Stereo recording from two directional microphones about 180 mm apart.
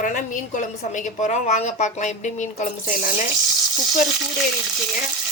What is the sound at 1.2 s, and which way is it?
Speech, 40° left (ahead or behind).